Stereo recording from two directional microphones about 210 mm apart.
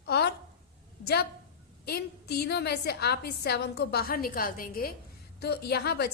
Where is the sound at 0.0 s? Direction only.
50° left (ahead or behind).